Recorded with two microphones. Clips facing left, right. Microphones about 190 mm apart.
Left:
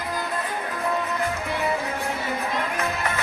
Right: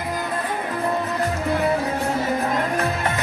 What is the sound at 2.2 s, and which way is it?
Music, 40° right (ahead or behind).